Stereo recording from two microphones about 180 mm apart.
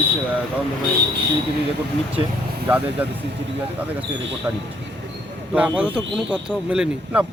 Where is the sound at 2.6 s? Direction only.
10° right (ahead or behind).